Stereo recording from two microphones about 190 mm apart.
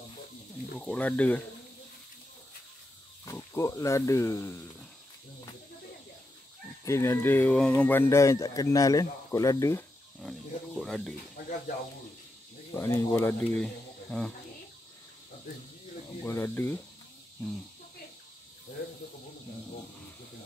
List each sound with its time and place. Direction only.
0.7 s speech: 5° left (ahead or behind)
3.3 s speech: 15° left (ahead or behind)
6.8 s speech: 15° left (ahead or behind)
10.2 s snake: centre (ahead or behind)
12.7 s speech: 15° left (ahead or behind)
14.1 s cricket: 5° left (ahead or behind)
16.3 s speech: 15° left (ahead or behind)